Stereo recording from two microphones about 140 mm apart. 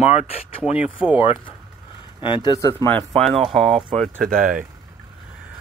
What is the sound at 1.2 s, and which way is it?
Speech, 40° left (ahead or behind).